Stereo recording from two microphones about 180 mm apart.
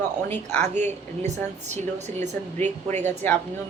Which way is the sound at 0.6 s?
40° right (ahead or behind).